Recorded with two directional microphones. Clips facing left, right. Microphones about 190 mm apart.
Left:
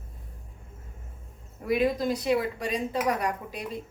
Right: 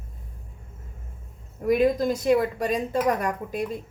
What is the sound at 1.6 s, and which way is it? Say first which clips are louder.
Speech: right 4 dB; 45° right (ahead or behind).